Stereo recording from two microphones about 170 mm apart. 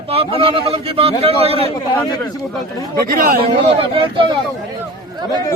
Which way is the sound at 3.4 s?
30° right (ahead or behind).